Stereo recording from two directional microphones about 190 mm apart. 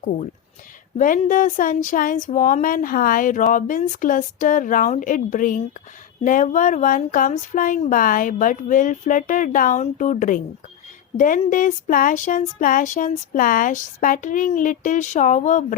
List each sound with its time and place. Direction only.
0.9 s speech: 45° left (ahead or behind)